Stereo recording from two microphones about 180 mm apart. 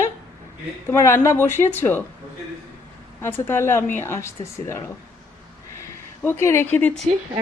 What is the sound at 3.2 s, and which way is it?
A woman's voice, 10° left (ahead or behind).